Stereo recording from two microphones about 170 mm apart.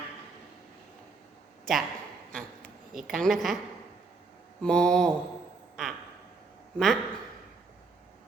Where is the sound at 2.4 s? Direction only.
Centre (ahead or behind).